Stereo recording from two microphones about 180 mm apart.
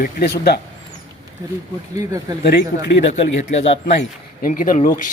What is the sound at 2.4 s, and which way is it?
Speech, 65° left (ahead or behind).